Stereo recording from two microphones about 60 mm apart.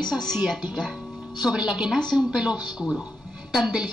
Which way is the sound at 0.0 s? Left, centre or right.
Centre.